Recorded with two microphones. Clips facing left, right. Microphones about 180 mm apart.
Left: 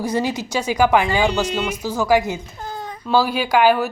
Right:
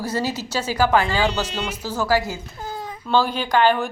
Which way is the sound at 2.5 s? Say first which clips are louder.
Left 1 dB; 5° right (ahead or behind).